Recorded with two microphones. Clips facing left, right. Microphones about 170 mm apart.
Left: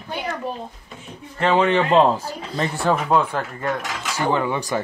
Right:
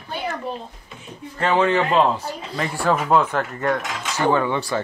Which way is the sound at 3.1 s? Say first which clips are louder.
Right 1 dB; 10° left (ahead or behind).